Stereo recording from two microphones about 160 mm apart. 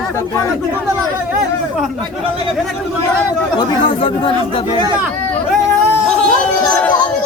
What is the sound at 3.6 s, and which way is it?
Speech, 30° left (ahead or behind).